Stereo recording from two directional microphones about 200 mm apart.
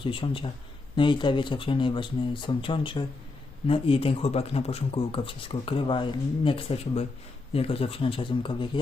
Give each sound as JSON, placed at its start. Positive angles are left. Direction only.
{"t": 0.0, "sound": "speech", "side_deg": 25}